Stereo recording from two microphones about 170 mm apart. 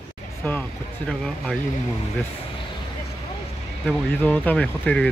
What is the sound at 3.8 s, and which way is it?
Speech, 10° left (ahead or behind).